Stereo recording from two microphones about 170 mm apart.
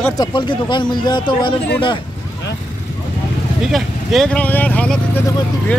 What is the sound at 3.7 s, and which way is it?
Speech, centre (ahead or behind).